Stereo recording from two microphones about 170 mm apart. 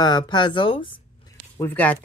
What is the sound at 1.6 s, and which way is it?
Speech, 10° left (ahead or behind).